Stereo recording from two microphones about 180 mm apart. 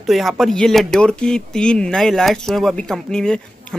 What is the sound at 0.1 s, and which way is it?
Speech, centre (ahead or behind).